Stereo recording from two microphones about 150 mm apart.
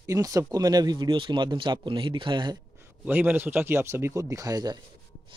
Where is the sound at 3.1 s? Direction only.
10° right (ahead or behind).